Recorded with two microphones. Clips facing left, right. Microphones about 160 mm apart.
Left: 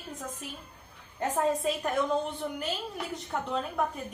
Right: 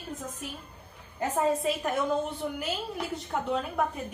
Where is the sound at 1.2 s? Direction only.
5° right (ahead or behind).